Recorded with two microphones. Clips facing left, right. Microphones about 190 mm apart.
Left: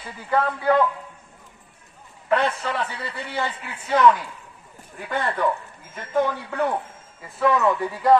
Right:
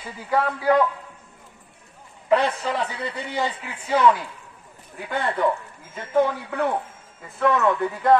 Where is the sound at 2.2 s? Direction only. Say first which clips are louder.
Right 2 dB; 10° right (ahead or behind).